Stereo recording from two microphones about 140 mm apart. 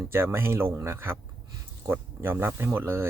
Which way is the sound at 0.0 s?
20° right (ahead or behind).